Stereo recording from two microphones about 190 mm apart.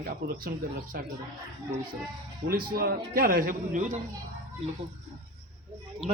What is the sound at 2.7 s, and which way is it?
Speech, 50° right (ahead or behind).